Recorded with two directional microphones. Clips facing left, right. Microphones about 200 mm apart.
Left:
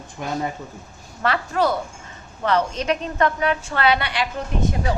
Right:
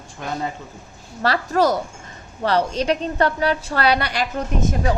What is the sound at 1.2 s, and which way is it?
A woman's voice, 40° right (ahead or behind).